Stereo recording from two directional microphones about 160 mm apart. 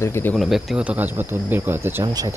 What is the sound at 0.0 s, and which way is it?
Speech, 15° left (ahead or behind).